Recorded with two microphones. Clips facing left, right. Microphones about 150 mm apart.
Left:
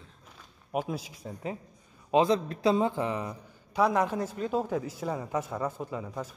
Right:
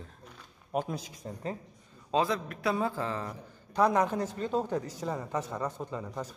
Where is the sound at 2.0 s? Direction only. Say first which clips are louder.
Left 5 dB; 25° left (ahead or behind).